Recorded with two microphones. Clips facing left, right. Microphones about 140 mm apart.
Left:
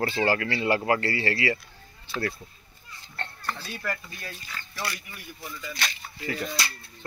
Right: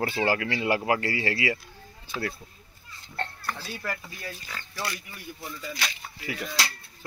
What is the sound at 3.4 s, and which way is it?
Speech, 15° right (ahead or behind).